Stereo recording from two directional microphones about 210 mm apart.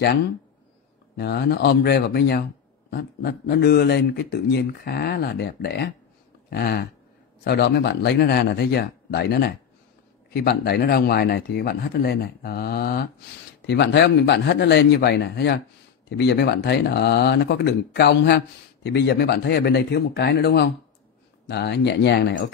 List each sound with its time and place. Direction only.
1.1 s speech: 50° left (ahead or behind)